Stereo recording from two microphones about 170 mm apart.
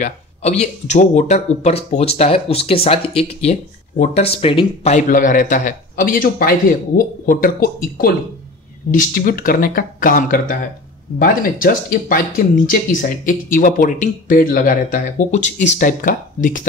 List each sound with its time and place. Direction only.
0.0 s speech: 40° left (ahead or behind)
4.9 s a man's voice: 50° left (ahead or behind)